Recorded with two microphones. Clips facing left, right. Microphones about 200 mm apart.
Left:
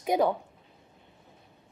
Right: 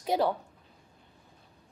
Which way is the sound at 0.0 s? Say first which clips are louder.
Left 2 dB; 20° left (ahead or behind).